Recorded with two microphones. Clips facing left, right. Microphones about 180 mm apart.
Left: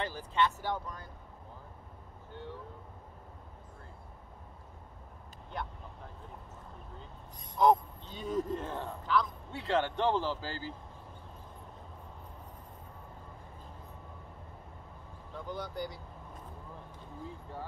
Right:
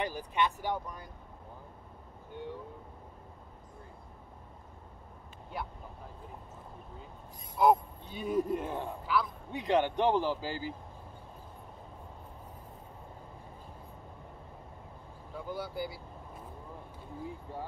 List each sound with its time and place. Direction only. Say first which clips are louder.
0.0 s speech: even; 15° right (ahead or behind)
2.3 s vehicle: right 3 dB; 15° right (ahead or behind)
5.5 s speech: even; 5° right (ahead or behind)
7.5 s speech: even; 5° right (ahead or behind)
15.3 s speech: right 1 dB; 5° right (ahead or behind)
17.5 s speech: right 1 dB; 15° right (ahead or behind)